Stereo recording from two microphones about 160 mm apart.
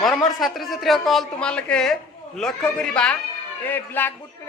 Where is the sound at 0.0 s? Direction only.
Centre (ahead or behind).